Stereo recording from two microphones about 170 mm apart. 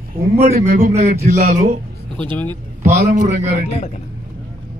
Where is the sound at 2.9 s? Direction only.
45° right (ahead or behind).